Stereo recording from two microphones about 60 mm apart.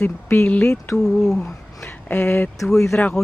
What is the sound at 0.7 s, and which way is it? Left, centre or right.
Speech, left.